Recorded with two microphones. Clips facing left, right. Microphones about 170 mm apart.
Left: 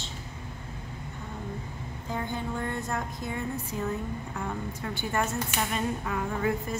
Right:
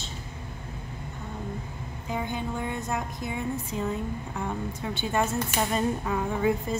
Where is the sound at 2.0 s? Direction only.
15° right (ahead or behind).